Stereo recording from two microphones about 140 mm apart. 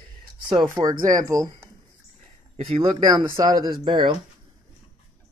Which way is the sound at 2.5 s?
45° right (ahead or behind).